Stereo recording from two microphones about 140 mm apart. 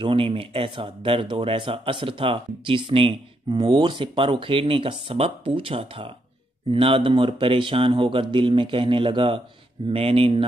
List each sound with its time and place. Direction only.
0.0 s speech: 40° right (ahead or behind)